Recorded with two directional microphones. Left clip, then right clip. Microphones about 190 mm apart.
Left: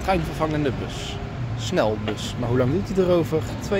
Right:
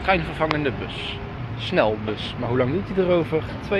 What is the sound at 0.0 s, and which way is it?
Speech, 15° left (ahead or behind).